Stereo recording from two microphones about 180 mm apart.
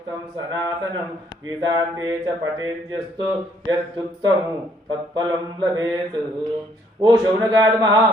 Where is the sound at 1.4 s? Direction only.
20° right (ahead or behind).